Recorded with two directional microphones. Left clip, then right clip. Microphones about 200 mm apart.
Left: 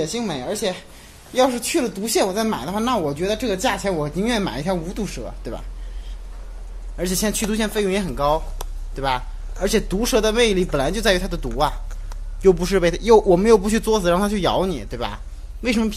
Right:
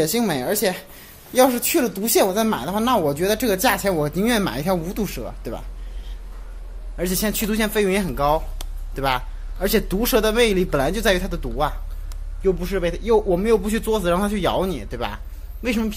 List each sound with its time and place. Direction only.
0.0 s a woman's voice: 30° right (ahead or behind); by 5.6 s 10° right (ahead or behind)
7.0 s speech: centre (ahead or behind)
12.4 s a man's voice: 25° left (ahead or behind); by 15.9 s 10° left (ahead or behind)